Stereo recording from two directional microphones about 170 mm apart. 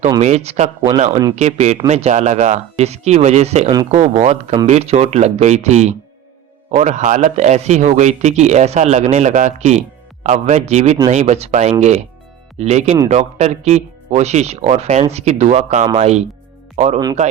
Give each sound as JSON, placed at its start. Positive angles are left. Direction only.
{"t": 0.2, "sound": "speech", "side_deg": -40}